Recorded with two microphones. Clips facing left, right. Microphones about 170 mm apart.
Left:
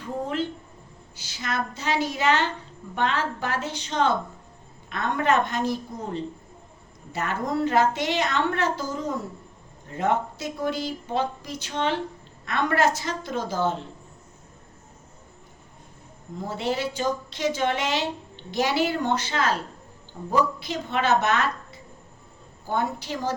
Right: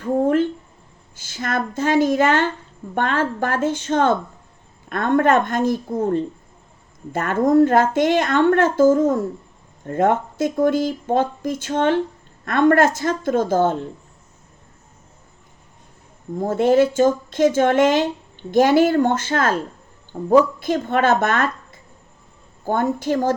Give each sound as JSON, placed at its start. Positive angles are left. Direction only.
{"t": 0.0, "sound": "speech", "side_deg": -50}
{"t": 16.4, "sound": "speech", "side_deg": -50}